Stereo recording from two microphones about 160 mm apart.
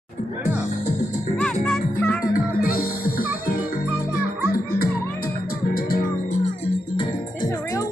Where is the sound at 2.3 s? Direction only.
65° left (ahead or behind).